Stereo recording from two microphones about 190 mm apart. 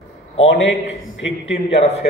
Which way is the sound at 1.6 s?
35° left (ahead or behind).